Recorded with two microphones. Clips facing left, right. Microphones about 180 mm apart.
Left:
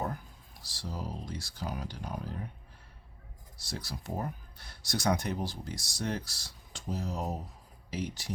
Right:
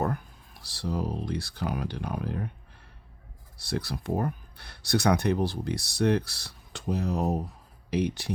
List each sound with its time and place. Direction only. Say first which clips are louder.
0.0 s speech: right 7 dB; 65° right (ahead or behind)
3.6 s speech: right 9 dB; 60° right (ahead or behind)